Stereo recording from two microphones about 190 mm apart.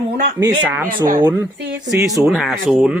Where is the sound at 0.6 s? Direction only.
10° right (ahead or behind).